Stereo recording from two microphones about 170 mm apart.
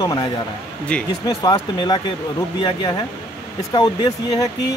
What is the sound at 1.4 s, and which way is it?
Speech, 25° left (ahead or behind).